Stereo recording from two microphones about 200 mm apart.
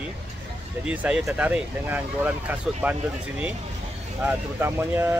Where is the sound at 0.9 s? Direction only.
5° right (ahead or behind).